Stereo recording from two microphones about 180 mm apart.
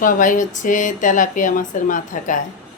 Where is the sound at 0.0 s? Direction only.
50° left (ahead or behind).